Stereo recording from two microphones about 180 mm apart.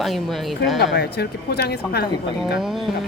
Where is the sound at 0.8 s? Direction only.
65° left (ahead or behind).